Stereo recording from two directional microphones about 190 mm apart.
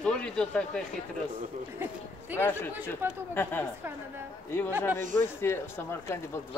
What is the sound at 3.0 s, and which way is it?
Speech, 10° right (ahead or behind).